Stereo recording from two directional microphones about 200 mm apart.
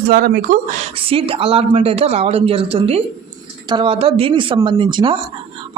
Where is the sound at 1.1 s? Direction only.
25° right (ahead or behind).